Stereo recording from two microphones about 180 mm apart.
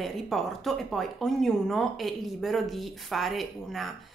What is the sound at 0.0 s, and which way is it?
A woman's voice, centre (ahead or behind).